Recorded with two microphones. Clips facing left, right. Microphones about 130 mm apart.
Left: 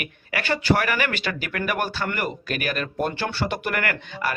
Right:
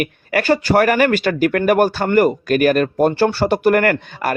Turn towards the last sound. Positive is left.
turn(degrees=-45)  # may be behind; listen again after turning